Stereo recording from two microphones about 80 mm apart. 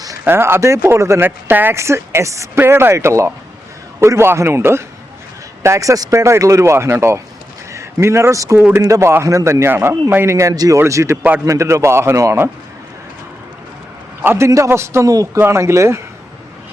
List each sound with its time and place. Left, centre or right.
0.3 s speech: right
2.6 s a man's voice: right
8.5 s speech: centre
8.8 s speech: right
10.5 s speech: right
10.8 s speech: right
14.2 s speech: right
15.0 s speech: right
15.4 s speech: right